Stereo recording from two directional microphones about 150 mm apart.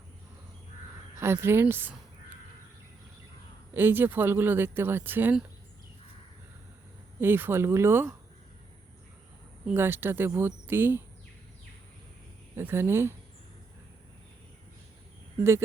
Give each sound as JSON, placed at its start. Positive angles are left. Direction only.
{"t": 1.1, "sound": "speech", "side_deg": -15}
{"t": 3.8, "sound": "speech", "side_deg": -15}
{"t": 7.2, "sound": "speech", "side_deg": -15}
{"t": 9.6, "sound": "speech", "side_deg": -15}
{"t": 12.5, "sound": "speech", "side_deg": -15}